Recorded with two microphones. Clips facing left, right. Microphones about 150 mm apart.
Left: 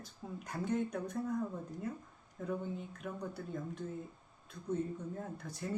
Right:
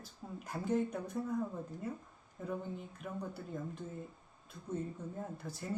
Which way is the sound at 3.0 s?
5° right (ahead or behind).